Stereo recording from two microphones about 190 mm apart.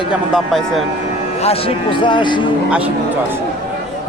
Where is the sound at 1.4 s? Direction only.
30° left (ahead or behind).